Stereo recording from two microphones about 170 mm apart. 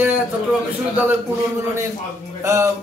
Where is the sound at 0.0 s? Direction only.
10° right (ahead or behind).